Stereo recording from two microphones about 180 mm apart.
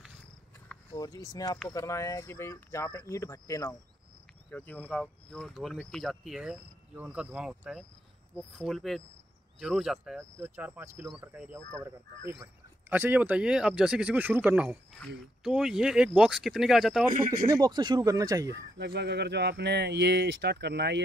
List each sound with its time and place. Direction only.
0.9 s speech: 20° left (ahead or behind); by 11.6 s 5° right (ahead or behind)
12.9 s speech: 10° right (ahead or behind)
17.5 s speech: 20° right (ahead or behind)
18.5 s speech: 70° right (ahead or behind)